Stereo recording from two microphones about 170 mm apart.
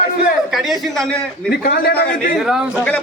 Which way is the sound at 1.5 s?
65° left (ahead or behind).